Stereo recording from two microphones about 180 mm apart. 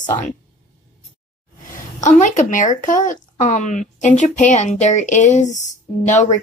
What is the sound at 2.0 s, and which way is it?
Speech, 45° left (ahead or behind).